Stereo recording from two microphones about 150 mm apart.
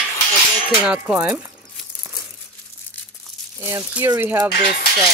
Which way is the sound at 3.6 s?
15° right (ahead or behind).